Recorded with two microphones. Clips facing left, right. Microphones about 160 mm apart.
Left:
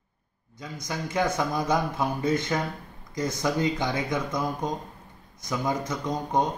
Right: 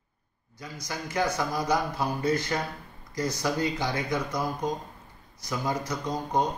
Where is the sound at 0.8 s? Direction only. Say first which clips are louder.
Left 2 dB; 20° left (ahead or behind).